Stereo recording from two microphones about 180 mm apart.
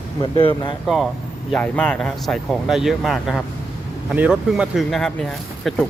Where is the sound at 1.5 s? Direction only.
5° left (ahead or behind).